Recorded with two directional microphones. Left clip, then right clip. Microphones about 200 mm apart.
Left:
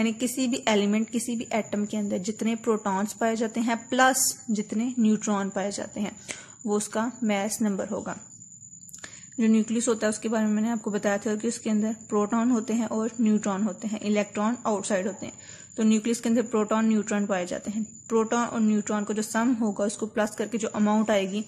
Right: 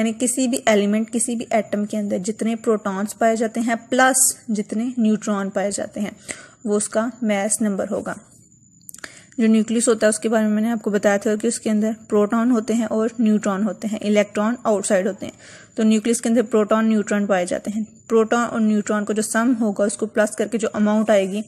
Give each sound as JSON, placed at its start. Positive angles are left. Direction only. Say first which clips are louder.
{"t": 0.0, "sound": "a woman's voice", "louder": "right 6 dB", "side_deg": -15}